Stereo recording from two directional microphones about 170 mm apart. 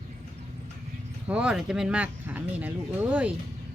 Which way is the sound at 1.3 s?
5° right (ahead or behind).